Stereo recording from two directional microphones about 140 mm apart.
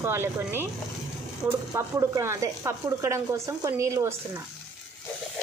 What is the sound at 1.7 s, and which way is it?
Speech, 20° right (ahead or behind).